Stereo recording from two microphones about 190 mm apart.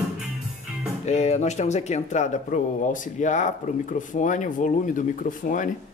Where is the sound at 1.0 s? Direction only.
35° left (ahead or behind).